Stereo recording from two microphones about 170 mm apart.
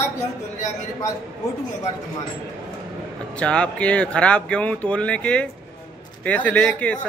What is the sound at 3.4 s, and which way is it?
Speech, 5° left (ahead or behind).